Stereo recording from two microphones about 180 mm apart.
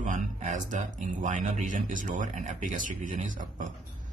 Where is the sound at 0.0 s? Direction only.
45° right (ahead or behind).